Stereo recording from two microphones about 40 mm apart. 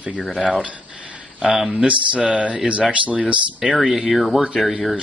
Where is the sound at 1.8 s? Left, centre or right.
Right.